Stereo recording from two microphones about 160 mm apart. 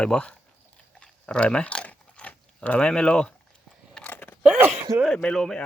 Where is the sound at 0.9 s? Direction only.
5° left (ahead or behind).